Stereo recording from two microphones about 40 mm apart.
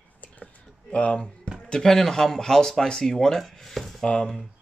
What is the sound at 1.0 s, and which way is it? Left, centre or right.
Speech, left.